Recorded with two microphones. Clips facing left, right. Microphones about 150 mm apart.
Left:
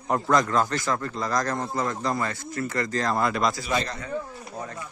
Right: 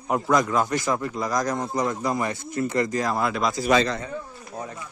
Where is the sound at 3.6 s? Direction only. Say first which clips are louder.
Right 7 dB; 80° right.